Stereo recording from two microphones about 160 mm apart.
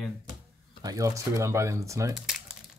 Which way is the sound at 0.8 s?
20° right (ahead or behind).